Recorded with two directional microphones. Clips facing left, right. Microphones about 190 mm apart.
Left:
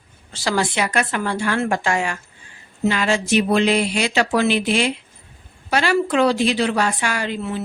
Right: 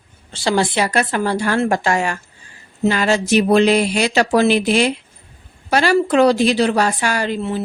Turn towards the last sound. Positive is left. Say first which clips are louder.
# right 4 dB
turn(degrees=-35)  # may be behind; listen again after turning